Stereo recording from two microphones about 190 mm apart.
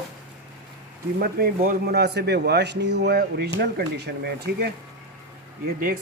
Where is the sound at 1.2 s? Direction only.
55° right (ahead or behind).